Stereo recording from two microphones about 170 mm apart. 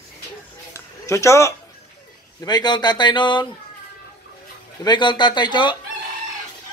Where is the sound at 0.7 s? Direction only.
15° left (ahead or behind).